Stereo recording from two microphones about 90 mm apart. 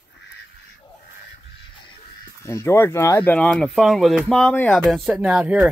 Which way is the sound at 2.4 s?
30° left (ahead or behind).